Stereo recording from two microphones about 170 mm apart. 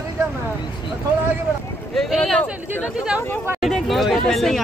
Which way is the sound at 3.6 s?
Centre (ahead or behind).